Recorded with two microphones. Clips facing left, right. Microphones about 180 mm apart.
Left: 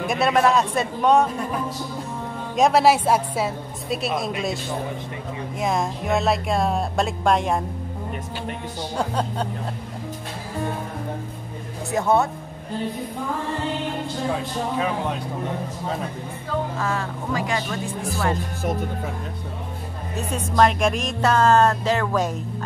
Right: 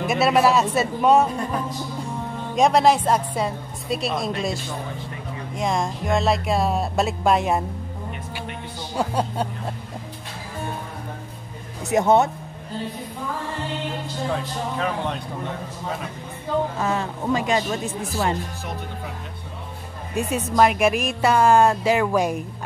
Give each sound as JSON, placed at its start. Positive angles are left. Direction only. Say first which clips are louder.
{"t": 0.0, "sound": "a woman's voice", "louder": "right 1 dB", "side_deg": -5}
{"t": 2.5, "sound": "a woman's voice", "louder": "even", "side_deg": 0}
{"t": 5.6, "sound": "a woman's voice", "louder": "even", "side_deg": 5}
{"t": 8.9, "sound": "speech", "louder": "right 2 dB", "side_deg": -10}
{"t": 11.9, "sound": "a woman's voice", "louder": "right 3 dB", "side_deg": -20}
{"t": 16.4, "sound": "a woman's voice", "louder": "right 3 dB", "side_deg": -20}
{"t": 20.2, "sound": "speech", "louder": "right 1 dB", "side_deg": -10}